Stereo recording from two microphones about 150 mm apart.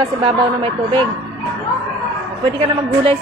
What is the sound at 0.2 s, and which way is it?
Speech, 35° right (ahead or behind).